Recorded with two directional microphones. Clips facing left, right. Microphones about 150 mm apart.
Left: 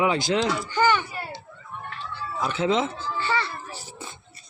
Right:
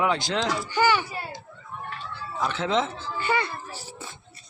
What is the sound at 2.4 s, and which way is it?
Speech, 5° left (ahead or behind).